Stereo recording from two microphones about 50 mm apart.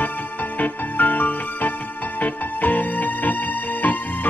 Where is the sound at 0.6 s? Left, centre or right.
Left.